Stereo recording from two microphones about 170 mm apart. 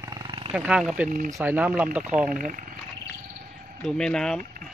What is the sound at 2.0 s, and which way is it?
Speech, 45° right (ahead or behind).